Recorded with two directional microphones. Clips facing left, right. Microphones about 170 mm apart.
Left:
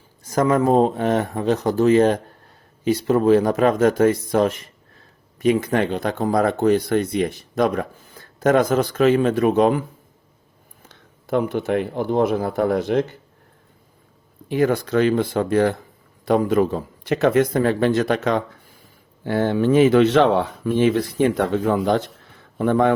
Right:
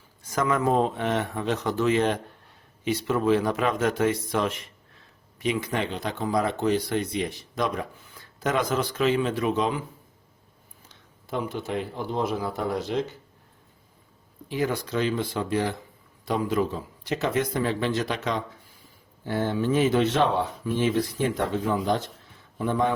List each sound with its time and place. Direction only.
0.3 s speech: 40° left (ahead or behind)
10.8 s speech: 60° left (ahead or behind)
14.4 s a man's voice: 55° left (ahead or behind)
19.2 s a man's voice: 70° left (ahead or behind)